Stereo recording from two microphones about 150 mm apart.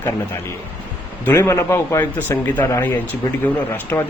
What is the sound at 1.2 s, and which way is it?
Speech, 15° left (ahead or behind).